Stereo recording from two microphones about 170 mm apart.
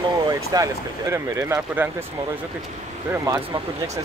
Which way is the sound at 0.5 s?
20° right (ahead or behind).